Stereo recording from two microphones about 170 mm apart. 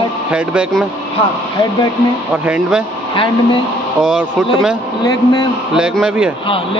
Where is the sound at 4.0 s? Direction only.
5° right (ahead or behind).